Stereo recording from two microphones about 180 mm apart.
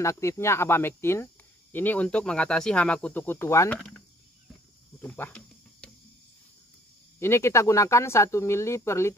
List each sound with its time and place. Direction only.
0.0 s speech: 15° left (ahead or behind)
5.0 s cricket: 10° left (ahead or behind)
7.2 s speech: 15° left (ahead or behind)